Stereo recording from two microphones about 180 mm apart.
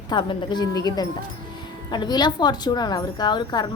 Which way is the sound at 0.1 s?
25° left (ahead or behind).